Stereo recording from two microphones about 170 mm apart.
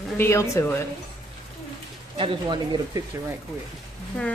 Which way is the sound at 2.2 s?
30° right (ahead or behind).